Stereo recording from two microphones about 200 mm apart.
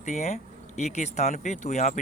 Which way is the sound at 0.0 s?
35° left (ahead or behind).